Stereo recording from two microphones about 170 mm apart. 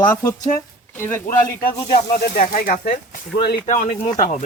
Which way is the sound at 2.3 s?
50° left (ahead or behind).